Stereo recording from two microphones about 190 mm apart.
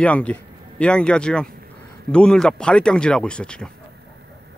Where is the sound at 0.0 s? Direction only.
5° left (ahead or behind).